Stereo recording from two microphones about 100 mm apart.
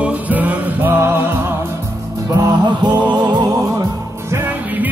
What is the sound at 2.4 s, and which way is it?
Music, 40° right (ahead or behind).